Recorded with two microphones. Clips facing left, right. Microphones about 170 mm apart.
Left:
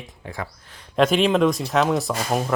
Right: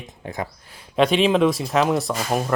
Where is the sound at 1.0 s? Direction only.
Centre (ahead or behind).